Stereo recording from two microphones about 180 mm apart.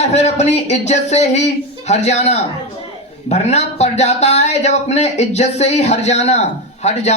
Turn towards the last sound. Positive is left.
turn(degrees=40)  # may be behind; listen again after turning